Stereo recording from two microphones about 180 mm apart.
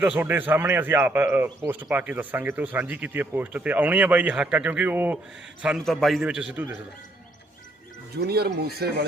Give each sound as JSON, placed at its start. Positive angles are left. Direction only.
{"t": 0.0, "sound": "a man's voice", "side_deg": -10}
{"t": 5.6, "sound": "a man's voice", "side_deg": 0}
{"t": 8.1, "sound": "speech", "side_deg": -60}